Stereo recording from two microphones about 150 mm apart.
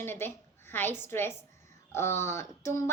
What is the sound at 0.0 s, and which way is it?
A woman's voice, 15° left (ahead or behind).